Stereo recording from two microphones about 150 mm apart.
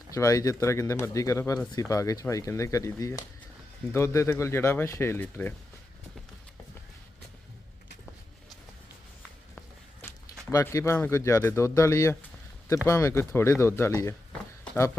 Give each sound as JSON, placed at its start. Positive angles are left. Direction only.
{"t": 0.1, "sound": "speech", "side_deg": 20}
{"t": 10.0, "sound": "a sound", "side_deg": 15}
{"t": 10.5, "sound": "speech", "side_deg": 20}